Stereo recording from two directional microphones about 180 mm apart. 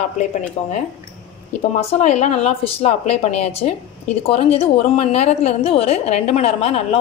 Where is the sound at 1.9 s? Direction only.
40° left (ahead or behind).